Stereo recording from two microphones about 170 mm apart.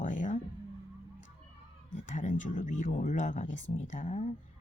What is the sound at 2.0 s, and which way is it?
Speech, 50° left (ahead or behind).